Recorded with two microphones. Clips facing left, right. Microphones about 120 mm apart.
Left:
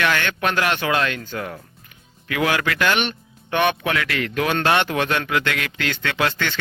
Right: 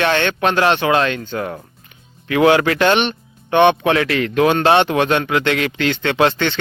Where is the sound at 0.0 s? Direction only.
30° right (ahead or behind).